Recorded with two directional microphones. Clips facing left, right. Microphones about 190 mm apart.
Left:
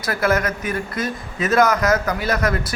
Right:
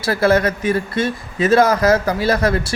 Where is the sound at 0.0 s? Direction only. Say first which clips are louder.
Right 5 dB; 30° right (ahead or behind).